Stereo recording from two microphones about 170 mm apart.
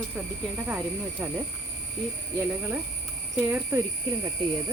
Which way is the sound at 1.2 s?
10° right (ahead or behind).